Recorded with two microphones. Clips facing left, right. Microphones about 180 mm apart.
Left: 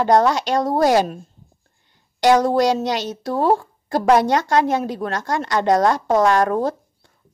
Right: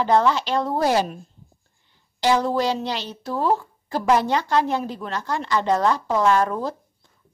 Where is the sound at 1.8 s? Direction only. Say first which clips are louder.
Left 5 dB; 55° left (ahead or behind).